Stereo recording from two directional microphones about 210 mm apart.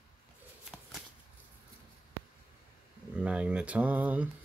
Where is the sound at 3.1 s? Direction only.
5° right (ahead or behind).